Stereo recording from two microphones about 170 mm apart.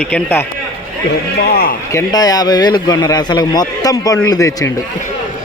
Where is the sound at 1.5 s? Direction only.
65° left (ahead or behind).